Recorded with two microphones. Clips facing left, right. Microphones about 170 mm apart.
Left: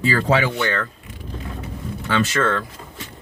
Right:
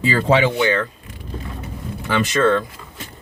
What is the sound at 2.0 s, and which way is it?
Speech, 15° right (ahead or behind).